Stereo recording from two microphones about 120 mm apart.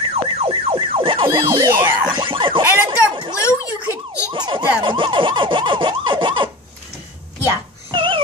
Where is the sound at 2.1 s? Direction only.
45° right (ahead or behind).